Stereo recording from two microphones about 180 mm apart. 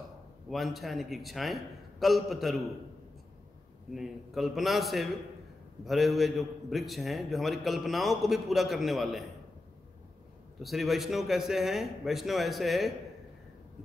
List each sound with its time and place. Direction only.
0.5 s a man's voice: centre (ahead or behind)
3.9 s a man's voice: centre (ahead or behind)
10.6 s a man's voice: centre (ahead or behind)